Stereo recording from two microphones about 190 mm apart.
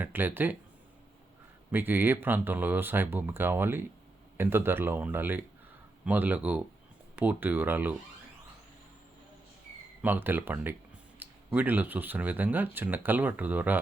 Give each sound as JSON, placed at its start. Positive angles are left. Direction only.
{"t": 0.0, "sound": "speech", "side_deg": -10}
{"t": 1.7, "sound": "speech", "side_deg": -10}
{"t": 10.0, "sound": "speech", "side_deg": -10}